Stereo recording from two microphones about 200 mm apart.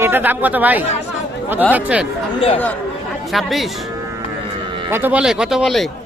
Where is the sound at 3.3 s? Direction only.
Centre (ahead or behind).